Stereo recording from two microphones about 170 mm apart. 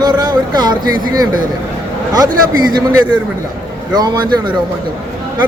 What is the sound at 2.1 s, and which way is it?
Speech, 25° right (ahead or behind).